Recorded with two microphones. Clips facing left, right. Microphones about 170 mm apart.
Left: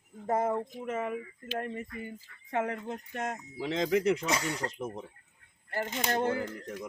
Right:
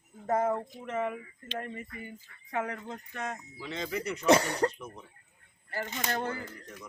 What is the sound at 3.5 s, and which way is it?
Speech, 90° left.